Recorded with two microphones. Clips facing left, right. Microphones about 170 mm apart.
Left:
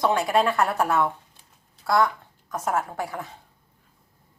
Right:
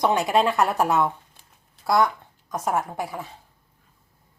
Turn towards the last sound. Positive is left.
turn(degrees=-5)  # may be behind; listen again after turning